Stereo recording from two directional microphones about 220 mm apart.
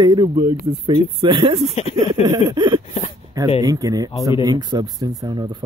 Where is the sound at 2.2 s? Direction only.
20° right (ahead or behind).